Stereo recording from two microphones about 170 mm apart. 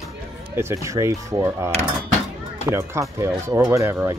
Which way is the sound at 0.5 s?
15° right (ahead or behind).